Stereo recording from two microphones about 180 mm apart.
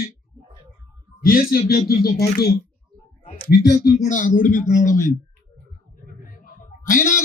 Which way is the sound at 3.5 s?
60° left (ahead or behind).